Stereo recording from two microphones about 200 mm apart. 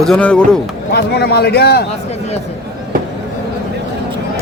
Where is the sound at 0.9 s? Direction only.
55° left (ahead or behind).